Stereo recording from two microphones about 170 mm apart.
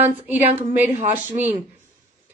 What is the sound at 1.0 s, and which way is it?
Speech, 40° right (ahead or behind).